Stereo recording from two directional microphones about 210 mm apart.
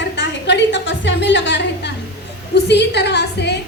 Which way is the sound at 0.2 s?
60° left (ahead or behind).